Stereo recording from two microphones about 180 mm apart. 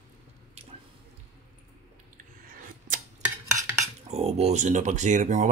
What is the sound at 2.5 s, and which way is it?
Scissors, 50° right (ahead or behind).